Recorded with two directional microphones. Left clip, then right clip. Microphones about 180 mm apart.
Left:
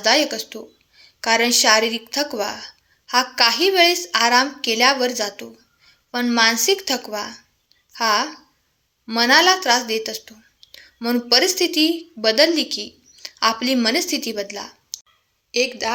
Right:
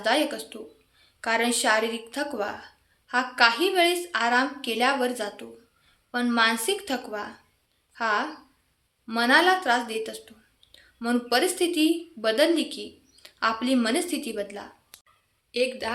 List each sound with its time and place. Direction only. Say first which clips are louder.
0.0 s a woman's voice: left 7 dB; 25° left (ahead or behind)